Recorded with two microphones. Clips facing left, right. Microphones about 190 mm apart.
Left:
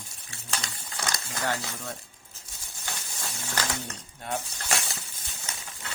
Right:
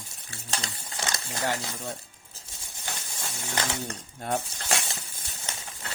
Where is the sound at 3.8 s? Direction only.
40° right (ahead or behind).